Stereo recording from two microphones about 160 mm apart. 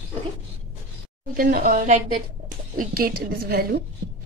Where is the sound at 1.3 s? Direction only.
65° right (ahead or behind).